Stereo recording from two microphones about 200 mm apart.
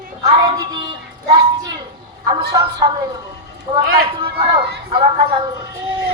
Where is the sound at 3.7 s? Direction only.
25° right (ahead or behind).